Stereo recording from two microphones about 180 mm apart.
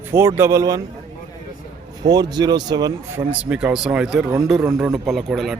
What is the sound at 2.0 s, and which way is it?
Speech, 20° right (ahead or behind).